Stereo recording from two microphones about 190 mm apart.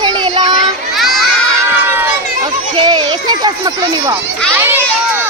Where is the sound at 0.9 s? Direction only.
Centre (ahead or behind).